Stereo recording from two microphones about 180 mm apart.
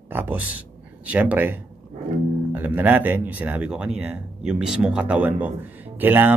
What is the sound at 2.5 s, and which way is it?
Speech, 10° right (ahead or behind).